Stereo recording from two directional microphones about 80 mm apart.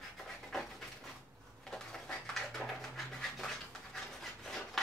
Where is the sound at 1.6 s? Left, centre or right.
Centre.